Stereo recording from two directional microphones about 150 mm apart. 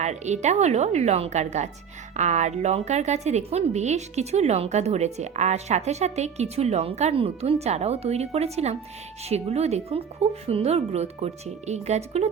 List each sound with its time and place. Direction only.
0.0 s a woman's voice: 50° right (ahead or behind)